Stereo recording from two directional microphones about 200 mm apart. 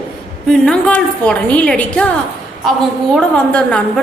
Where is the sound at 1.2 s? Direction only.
5° left (ahead or behind).